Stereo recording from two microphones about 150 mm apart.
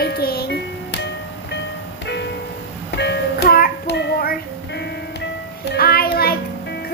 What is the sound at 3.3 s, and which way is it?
Music, 85° left.